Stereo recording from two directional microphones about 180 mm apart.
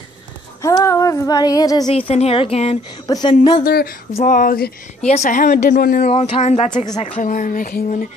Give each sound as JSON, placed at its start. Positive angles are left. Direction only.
{"t": 0.6, "sound": "speech", "side_deg": 15}
{"t": 2.0, "sound": "speech", "side_deg": 35}
{"t": 3.1, "sound": "speech", "side_deg": 20}
{"t": 3.6, "sound": "speech", "side_deg": 55}
{"t": 4.1, "sound": "speech", "side_deg": 40}
{"t": 5.0, "sound": "speech", "side_deg": 40}
{"t": 6.0, "sound": "speech", "side_deg": 40}